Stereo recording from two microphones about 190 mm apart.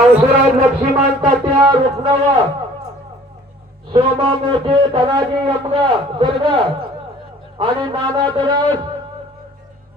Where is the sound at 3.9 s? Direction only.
30° right (ahead or behind).